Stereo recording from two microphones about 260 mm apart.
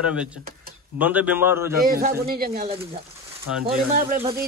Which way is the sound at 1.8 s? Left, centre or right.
Right.